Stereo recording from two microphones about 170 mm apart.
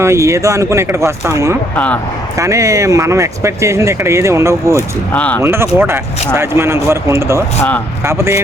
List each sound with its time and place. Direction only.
0.0 s speech: 15° right (ahead or behind)
1.7 s speech: 10° left (ahead or behind)
2.4 s speech: 20° right (ahead or behind)
5.1 s speech: 10° left (ahead or behind)
5.4 s speech: 15° right (ahead or behind)